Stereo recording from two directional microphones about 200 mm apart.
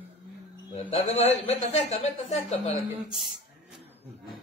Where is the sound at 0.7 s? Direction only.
35° left (ahead or behind).